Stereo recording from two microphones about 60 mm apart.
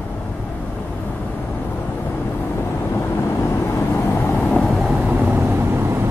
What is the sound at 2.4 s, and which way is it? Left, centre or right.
Vehicle, left.